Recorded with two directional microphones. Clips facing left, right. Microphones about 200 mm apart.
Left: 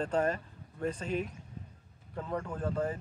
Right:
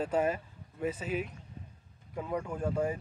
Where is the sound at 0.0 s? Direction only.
10° right (ahead or behind).